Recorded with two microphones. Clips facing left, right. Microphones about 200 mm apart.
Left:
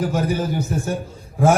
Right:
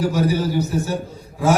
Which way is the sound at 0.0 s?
50° left (ahead or behind).